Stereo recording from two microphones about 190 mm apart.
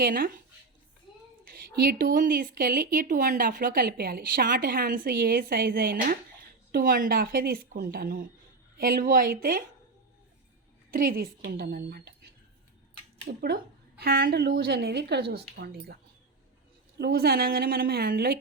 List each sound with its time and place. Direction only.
0.0 s speech: 50° right (ahead or behind)
1.5 s speech: 50° right (ahead or behind)
10.9 s speech: 50° right (ahead or behind)
13.2 s speech: 55° right (ahead or behind)
17.0 s speech: 55° right (ahead or behind)